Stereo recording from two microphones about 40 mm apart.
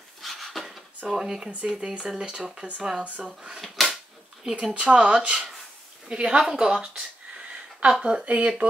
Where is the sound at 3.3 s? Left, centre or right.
Centre.